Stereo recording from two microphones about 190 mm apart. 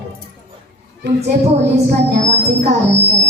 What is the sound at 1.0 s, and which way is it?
Speech, 65° right (ahead or behind).